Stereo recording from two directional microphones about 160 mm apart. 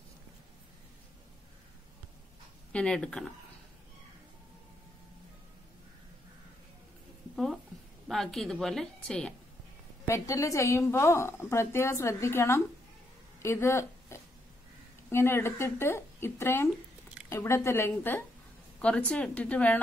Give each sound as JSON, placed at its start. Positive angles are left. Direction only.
{"t": 2.7, "sound": "a woman's voice", "side_deg": 5}
{"t": 8.1, "sound": "a woman's voice", "side_deg": 0}
{"t": 10.0, "sound": "a woman's voice", "side_deg": 20}